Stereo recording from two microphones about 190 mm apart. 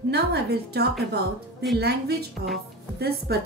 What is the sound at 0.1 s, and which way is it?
Music, 60° right (ahead or behind).